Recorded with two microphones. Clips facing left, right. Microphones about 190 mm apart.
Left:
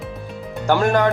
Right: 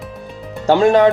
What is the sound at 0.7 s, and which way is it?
Speech, 20° right (ahead or behind).